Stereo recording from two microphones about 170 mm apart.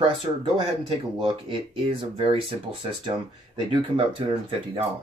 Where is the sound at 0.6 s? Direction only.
30° right (ahead or behind).